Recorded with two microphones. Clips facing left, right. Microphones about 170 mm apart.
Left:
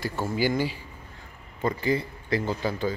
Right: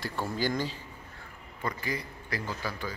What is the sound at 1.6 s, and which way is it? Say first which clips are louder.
Speech: left 9 dB; 25° left (ahead or behind).